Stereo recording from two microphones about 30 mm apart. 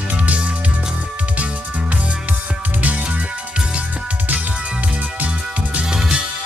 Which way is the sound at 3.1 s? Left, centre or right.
Right.